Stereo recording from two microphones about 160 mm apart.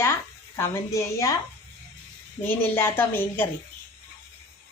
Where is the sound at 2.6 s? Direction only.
15° left (ahead or behind).